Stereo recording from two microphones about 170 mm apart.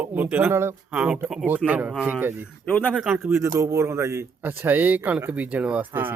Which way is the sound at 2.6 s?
10° left (ahead or behind).